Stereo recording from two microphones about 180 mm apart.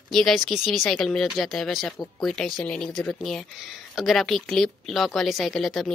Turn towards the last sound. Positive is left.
turn(degrees=0)  # may be behind; listen again after turning